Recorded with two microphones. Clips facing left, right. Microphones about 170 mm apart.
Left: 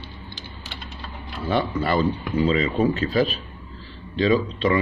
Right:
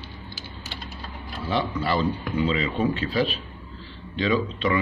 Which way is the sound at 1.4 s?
50° left (ahead or behind).